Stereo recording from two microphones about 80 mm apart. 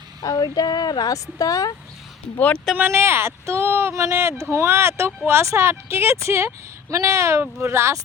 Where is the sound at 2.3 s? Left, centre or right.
Centre.